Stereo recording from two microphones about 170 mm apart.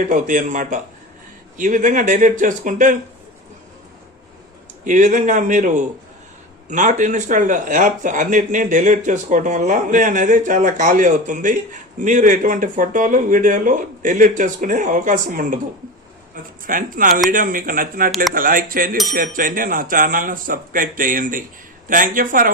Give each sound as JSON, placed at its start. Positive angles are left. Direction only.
{"t": 0.0, "sound": "speech", "side_deg": -50}
{"t": 4.9, "sound": "a man's voice", "side_deg": -50}